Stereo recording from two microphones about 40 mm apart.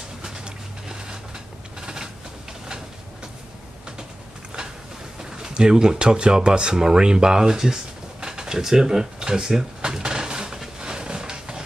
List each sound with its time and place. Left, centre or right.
1.8 s mechanisms: centre
5.4 s speech: centre
10.8 s a sound: right